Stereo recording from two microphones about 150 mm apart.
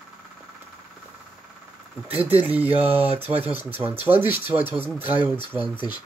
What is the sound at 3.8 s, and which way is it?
Speech, 15° right (ahead or behind).